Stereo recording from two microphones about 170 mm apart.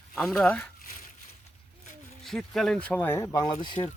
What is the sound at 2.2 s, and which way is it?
Speech, centre (ahead or behind).